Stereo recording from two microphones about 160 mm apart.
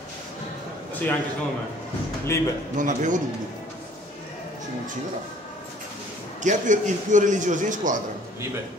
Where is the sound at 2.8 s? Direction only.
50° right (ahead or behind).